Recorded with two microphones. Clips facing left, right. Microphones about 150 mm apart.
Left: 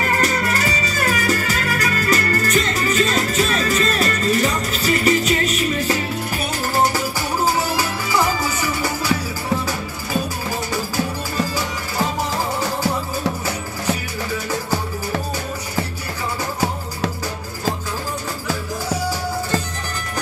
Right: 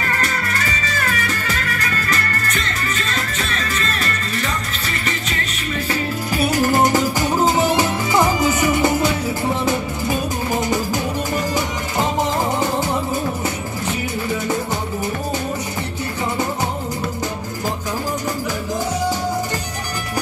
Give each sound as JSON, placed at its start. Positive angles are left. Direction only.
{"t": 0.2, "sound": "music", "side_deg": 35}
{"t": 6.5, "sound": "music", "side_deg": -15}
{"t": 12.2, "sound": "music", "side_deg": -20}